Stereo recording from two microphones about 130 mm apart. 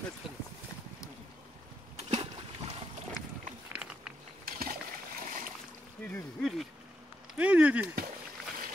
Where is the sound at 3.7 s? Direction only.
5° right (ahead or behind).